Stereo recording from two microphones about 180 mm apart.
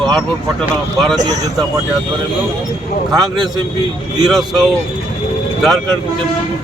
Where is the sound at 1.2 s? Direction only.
20° right (ahead or behind).